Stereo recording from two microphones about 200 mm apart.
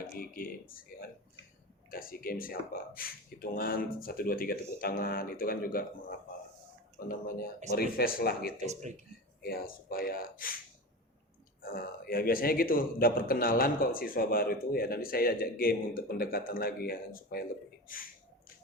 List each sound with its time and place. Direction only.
0.1 s a man's voice: 45° left (ahead or behind)
1.9 s a man's voice: 45° left (ahead or behind)
8.5 s speech: 35° right (ahead or behind)
9.4 s a man's voice: 50° left (ahead or behind)
11.6 s a man's voice: 45° left (ahead or behind)